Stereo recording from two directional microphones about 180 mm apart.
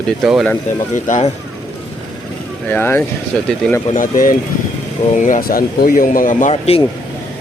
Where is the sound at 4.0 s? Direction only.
50° left (ahead or behind).